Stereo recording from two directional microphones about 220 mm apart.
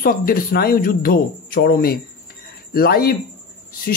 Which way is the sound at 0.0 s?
40° left (ahead or behind).